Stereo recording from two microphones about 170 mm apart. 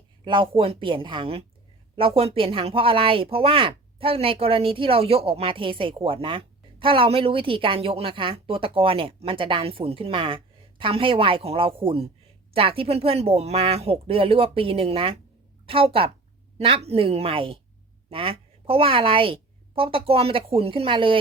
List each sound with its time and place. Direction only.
0.3 s a woman's voice: 30° right (ahead or behind)